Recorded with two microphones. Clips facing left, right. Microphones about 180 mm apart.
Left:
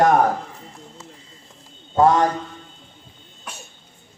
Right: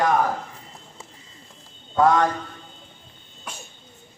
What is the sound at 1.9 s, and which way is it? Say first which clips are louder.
Speech: left 2 dB; 25° left (ahead or behind).